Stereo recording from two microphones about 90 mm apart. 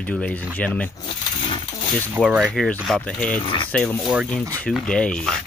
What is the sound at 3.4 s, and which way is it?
Speech, 70° left (ahead or behind).